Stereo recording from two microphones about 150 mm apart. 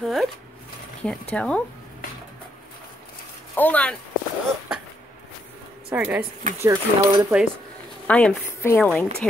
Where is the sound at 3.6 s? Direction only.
10° left (ahead or behind).